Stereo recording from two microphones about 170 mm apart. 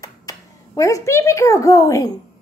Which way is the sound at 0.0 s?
20° left (ahead or behind).